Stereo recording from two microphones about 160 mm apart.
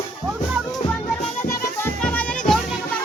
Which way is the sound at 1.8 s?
10° left (ahead or behind).